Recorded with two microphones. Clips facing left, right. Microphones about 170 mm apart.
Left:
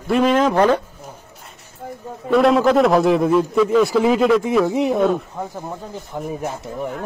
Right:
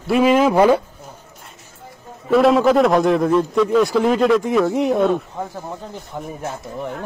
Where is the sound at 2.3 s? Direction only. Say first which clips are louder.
Right 1 dB; centre (ahead or behind).